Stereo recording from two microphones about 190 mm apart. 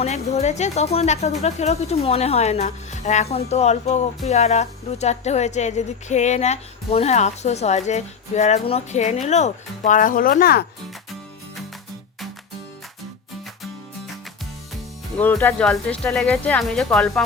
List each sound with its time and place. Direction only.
0.0 s speech: 35° left (ahead or behind); by 10.7 s 55° left (ahead or behind)
15.2 s speech: 10° left (ahead or behind)